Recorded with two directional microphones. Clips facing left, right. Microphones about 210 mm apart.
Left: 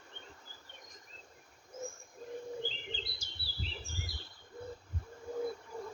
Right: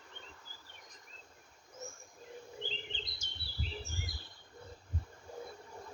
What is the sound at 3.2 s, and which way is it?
Chirp, 35° left (ahead or behind).